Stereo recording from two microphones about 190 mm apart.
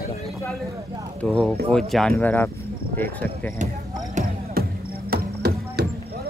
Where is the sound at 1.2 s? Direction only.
5° left (ahead or behind).